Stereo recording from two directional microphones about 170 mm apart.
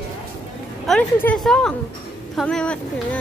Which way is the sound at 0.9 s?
Centre (ahead or behind).